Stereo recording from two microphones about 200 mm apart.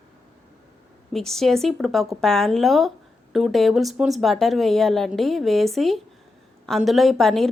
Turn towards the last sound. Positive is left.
turn(degrees=0)  # may be behind; listen again after turning